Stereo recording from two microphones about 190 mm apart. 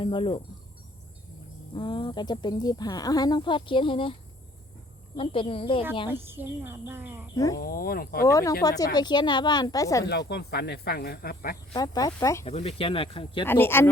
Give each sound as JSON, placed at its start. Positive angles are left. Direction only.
{"t": 0.0, "sound": "speech", "side_deg": 25}
{"t": 1.7, "sound": "speech", "side_deg": 25}
{"t": 6.1, "sound": "a woman's voice", "side_deg": -10}
{"t": 7.3, "sound": "speech", "side_deg": 15}
{"t": 7.6, "sound": "speech", "side_deg": 50}
{"t": 8.2, "sound": "speech", "side_deg": 15}
{"t": 10.1, "sound": "speech", "side_deg": 60}
{"t": 11.7, "sound": "speech", "side_deg": 20}
{"t": 12.5, "sound": "speech", "side_deg": 30}
{"t": 13.5, "sound": "speech", "side_deg": 10}